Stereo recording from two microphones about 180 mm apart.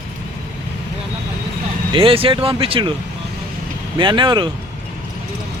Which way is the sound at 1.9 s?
30° right (ahead or behind).